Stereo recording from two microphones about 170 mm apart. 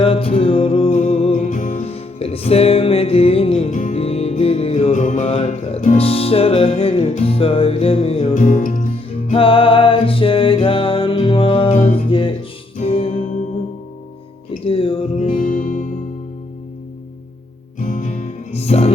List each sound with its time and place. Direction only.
0.0 s music: 35° left (ahead or behind)
3.8 s music: 50° left (ahead or behind)
4.0 s music: 35° left (ahead or behind)
9.3 s music: 30° left (ahead or behind)
12.8 s music: 35° left (ahead or behind)
14.6 s music: 35° left (ahead or behind)
15.3 s music: 50° left (ahead or behind)
17.7 s music: 50° left (ahead or behind)